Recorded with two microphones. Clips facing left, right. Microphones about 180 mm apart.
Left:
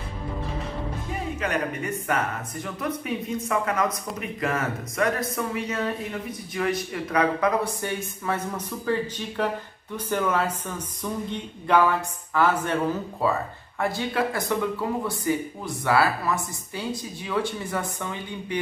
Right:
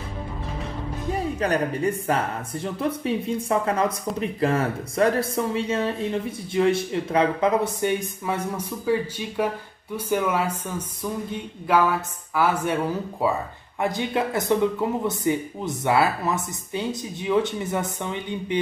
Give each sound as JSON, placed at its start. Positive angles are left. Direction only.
{"t": 1.4, "sound": "speech", "side_deg": -35}